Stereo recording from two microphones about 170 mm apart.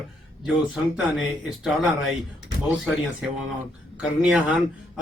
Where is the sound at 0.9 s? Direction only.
5° right (ahead or behind).